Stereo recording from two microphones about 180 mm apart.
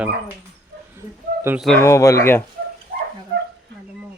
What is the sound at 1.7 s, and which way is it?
Speech, 15° left (ahead or behind).